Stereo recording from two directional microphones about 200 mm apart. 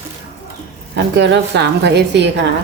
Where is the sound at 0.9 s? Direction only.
60° right (ahead or behind).